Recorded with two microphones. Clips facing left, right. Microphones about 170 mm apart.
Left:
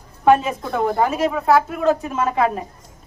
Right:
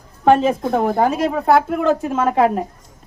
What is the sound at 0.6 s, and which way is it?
Speech, 50° right (ahead or behind).